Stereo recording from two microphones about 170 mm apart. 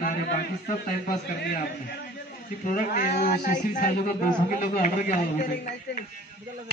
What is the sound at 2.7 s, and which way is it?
A man's voice, 55° left (ahead or behind).